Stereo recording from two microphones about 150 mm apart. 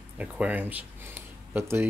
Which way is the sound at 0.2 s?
10° right (ahead or behind).